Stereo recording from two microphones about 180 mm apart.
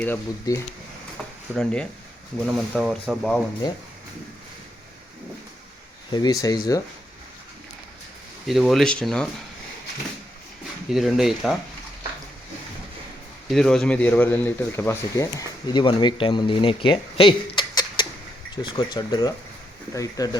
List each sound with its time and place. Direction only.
0.0 s speech: 15° left (ahead or behind)
6.1 s speech: 20° left (ahead or behind)
8.4 s speech: centre (ahead or behind)
10.8 s speech: centre (ahead or behind)
13.5 s speech: 5° left (ahead or behind); by 20.4 s 20° left (ahead or behind)